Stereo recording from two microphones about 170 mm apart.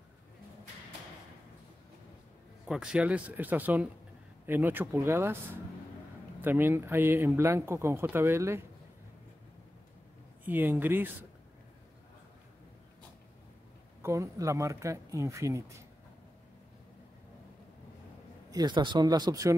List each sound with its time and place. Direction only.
2.6 s speech: 5° right (ahead or behind)
10.4 s speech: 10° right (ahead or behind)
14.0 s speech: 20° right (ahead or behind)
18.5 s speech: 25° right (ahead or behind)